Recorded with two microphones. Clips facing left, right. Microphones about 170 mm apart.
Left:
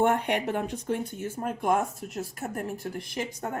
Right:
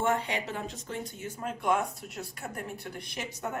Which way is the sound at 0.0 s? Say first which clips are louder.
Left 5 dB; 60° left (ahead or behind).